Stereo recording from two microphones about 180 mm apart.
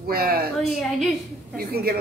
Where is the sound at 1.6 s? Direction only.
60° right (ahead or behind).